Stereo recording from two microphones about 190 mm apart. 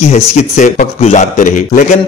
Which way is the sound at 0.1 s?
40° left (ahead or behind).